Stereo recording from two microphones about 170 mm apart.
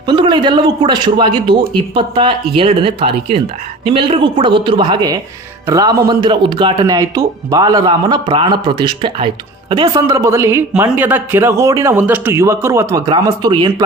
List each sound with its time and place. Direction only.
0.1 s speech: 25° right (ahead or behind)